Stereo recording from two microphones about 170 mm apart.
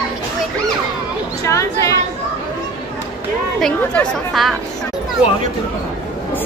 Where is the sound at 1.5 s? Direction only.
15° left (ahead or behind).